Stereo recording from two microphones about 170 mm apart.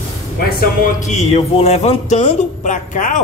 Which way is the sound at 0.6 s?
45° left (ahead or behind).